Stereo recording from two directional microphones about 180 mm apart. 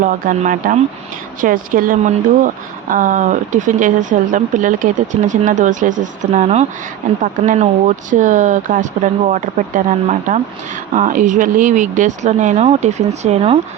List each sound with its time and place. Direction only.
0.0 s speech: 45° right (ahead or behind)